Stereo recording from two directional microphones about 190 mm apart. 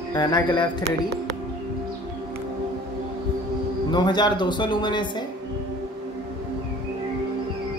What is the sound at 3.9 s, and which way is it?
Speech, 25° left (ahead or behind).